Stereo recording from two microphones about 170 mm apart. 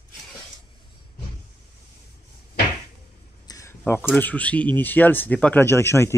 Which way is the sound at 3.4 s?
20° left (ahead or behind).